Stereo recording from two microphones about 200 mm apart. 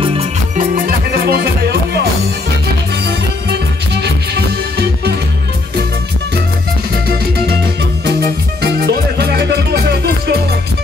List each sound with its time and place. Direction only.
0.6 s music: 50° right (ahead or behind)
8.8 s music: 55° right (ahead or behind)